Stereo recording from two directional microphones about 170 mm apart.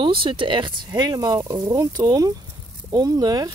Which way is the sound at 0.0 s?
30° right (ahead or behind).